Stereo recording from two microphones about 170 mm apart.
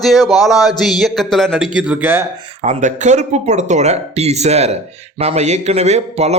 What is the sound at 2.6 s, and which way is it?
Speech, 45° right (ahead or behind).